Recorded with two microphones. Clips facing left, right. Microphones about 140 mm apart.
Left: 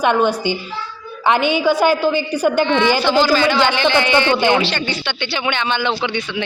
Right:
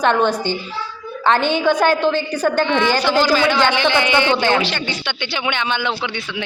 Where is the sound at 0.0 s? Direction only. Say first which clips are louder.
Left 1 dB; 10° left (ahead or behind).